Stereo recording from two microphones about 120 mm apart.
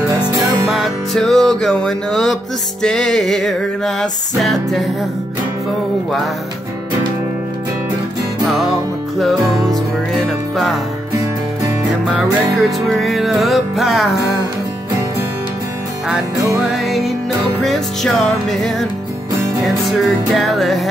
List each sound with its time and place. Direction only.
0.4 s music: centre (ahead or behind)
8.5 s music: centre (ahead or behind)
10.1 s music: centre (ahead or behind)
12.2 s music: centre (ahead or behind)
16.5 s music: centre (ahead or behind)